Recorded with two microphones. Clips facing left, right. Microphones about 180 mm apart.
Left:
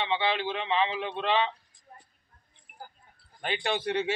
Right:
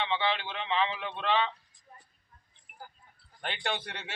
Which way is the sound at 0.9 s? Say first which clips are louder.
Left 2 dB; 15° left (ahead or behind).